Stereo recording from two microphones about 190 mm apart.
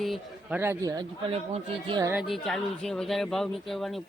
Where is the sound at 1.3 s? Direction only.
30° right (ahead or behind).